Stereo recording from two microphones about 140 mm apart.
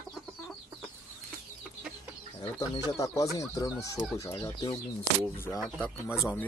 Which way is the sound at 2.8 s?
25° left (ahead or behind).